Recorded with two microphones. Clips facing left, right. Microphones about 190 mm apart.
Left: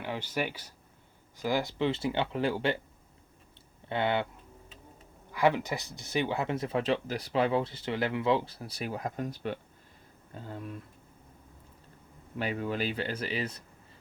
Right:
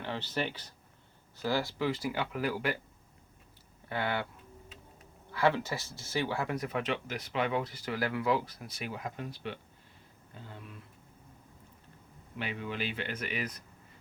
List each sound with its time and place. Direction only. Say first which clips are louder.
0.0 s speech: left 2 dB; 10° left (ahead or behind); by 2.7 s 30° left (ahead or behind)
3.8 s speech: left 4 dB; 25° left (ahead or behind)
5.3 s speech: left 2 dB; 15° left (ahead or behind); by 10.8 s 40° left (ahead or behind)
12.4 s speech: left 5 dB; 40° left (ahead or behind)